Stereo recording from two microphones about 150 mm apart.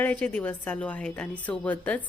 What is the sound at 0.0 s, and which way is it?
A woman's voice, 10° left (ahead or behind).